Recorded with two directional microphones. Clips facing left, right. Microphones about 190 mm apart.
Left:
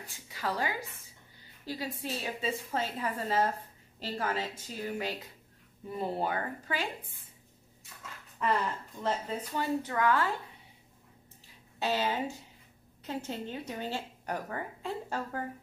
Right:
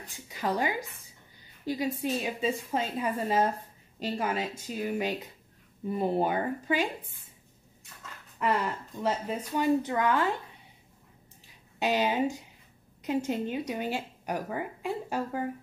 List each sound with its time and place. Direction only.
0.3 s a woman's voice: 20° right (ahead or behind)
9.0 s a woman's voice: 15° right (ahead or behind)
11.8 s speech: 15° right (ahead or behind)